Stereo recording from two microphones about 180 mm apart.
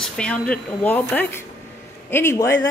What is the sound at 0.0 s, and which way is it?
A woman's voice, 5° left (ahead or behind).